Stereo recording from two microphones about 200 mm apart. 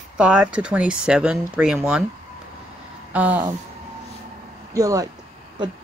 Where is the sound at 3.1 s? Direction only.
10° right (ahead or behind).